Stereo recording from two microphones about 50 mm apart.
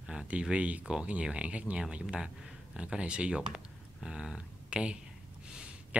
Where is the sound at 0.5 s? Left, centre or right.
Right.